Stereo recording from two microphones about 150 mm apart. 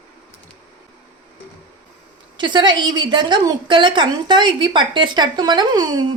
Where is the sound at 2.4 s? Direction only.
30° right (ahead or behind).